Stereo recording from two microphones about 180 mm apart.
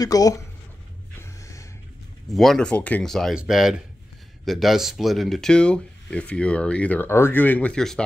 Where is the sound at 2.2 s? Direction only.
Centre (ahead or behind).